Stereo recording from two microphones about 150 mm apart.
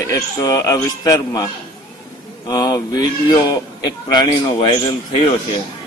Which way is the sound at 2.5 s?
25° left (ahead or behind).